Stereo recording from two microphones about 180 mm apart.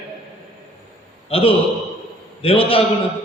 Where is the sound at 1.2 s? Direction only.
30° left (ahead or behind).